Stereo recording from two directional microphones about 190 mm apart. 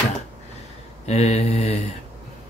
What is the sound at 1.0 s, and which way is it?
Speech, 35° left (ahead or behind).